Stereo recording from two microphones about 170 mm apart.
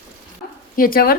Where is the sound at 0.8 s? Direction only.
60° left (ahead or behind).